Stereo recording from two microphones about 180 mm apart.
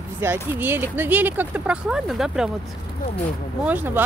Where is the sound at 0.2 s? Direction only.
10° right (ahead or behind).